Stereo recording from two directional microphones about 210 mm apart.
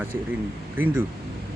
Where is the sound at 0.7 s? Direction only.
10° right (ahead or behind).